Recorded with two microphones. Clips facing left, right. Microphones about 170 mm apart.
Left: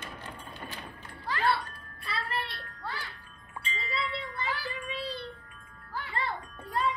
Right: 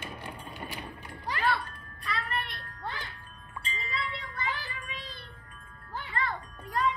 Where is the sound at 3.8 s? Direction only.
30° left (ahead or behind).